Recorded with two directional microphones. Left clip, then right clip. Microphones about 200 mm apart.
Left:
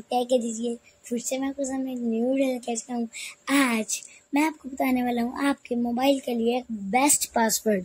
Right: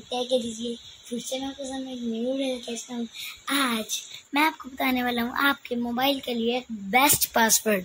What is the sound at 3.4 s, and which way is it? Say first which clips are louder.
A woman's voice: left 2 dB; 15° left (ahead or behind).